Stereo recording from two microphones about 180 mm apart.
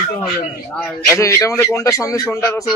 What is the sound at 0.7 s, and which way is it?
A man's voice, 10° left (ahead or behind).